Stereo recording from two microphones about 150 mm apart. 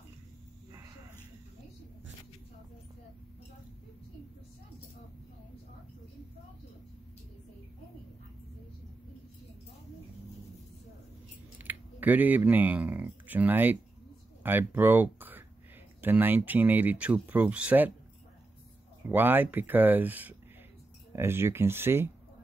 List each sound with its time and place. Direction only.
0.7 s snake: 20° right (ahead or behind)
11.5 s speech: 10° right (ahead or behind)
19.0 s speech: 15° right (ahead or behind)